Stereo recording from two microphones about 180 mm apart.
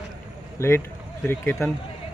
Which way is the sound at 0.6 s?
15° left (ahead or behind).